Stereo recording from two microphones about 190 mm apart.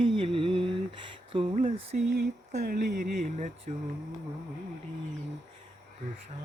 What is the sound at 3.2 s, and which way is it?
Speech, 40° right (ahead or behind).